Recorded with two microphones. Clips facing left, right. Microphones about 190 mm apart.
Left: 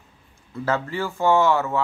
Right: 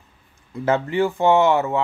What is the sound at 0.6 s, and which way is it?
Speech, 20° right (ahead or behind).